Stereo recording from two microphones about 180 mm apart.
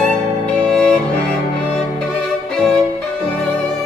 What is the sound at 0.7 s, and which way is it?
Music, centre (ahead or behind).